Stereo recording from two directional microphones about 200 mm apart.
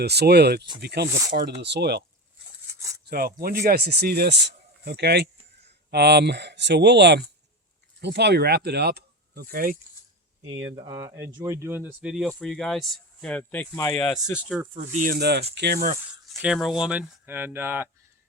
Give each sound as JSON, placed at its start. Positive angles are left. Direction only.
{"t": 0.0, "sound": "speech", "side_deg": -55}
{"t": 2.7, "sound": "cutlery", "side_deg": -15}
{"t": 3.1, "sound": "speech", "side_deg": -50}
{"t": 10.7, "sound": "speech", "side_deg": -20}
{"t": 14.4, "sound": "speech", "side_deg": -5}
{"t": 14.8, "sound": "speech", "side_deg": -45}
{"t": 16.3, "sound": "speech", "side_deg": 0}